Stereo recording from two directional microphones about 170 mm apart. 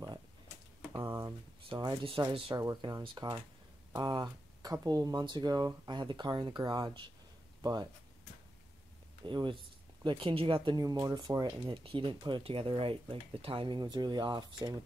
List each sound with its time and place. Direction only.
0.9 s a sound: 15° right (ahead or behind)
1.7 s speech: 30° right (ahead or behind)
9.2 s speech: 30° right (ahead or behind)